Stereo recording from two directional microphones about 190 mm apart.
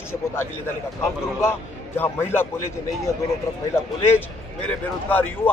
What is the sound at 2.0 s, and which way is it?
Speech, 10° left (ahead or behind).